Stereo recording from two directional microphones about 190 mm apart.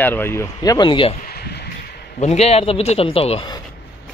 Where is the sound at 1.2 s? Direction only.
55° left (ahead or behind).